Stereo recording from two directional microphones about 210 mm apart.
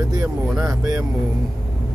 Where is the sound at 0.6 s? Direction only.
15° right (ahead or behind).